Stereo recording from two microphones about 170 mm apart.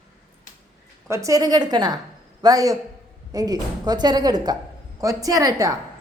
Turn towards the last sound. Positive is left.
turn(degrees=-20)  # may be behind; listen again after turning